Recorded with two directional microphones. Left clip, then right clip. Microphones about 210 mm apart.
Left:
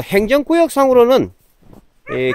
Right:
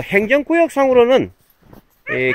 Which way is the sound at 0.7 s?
15° left (ahead or behind).